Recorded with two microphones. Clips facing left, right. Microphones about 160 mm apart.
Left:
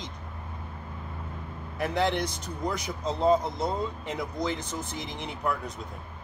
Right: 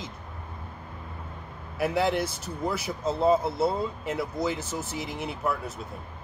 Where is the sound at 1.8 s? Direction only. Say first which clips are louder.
Right 2 dB; 5° right (ahead or behind).